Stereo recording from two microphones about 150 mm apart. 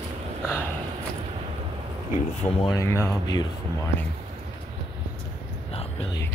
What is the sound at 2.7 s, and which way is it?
Speech, 20° left (ahead or behind).